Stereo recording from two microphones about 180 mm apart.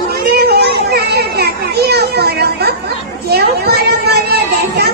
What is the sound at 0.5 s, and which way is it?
Children playing, 65° right (ahead or behind).